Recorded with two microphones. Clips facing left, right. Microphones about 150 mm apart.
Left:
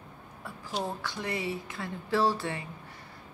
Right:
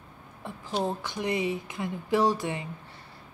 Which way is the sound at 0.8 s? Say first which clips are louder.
Right 5 dB; 20° right (ahead or behind).